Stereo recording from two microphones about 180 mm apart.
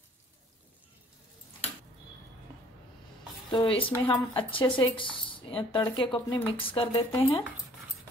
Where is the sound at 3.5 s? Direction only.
30° left (ahead or behind).